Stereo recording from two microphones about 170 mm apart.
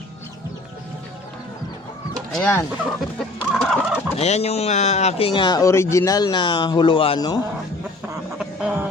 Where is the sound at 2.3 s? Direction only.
10° left (ahead or behind).